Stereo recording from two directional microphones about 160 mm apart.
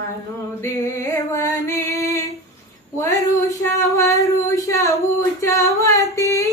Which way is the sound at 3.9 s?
20° left (ahead or behind).